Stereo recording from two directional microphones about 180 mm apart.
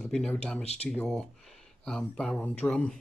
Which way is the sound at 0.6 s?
35° left (ahead or behind).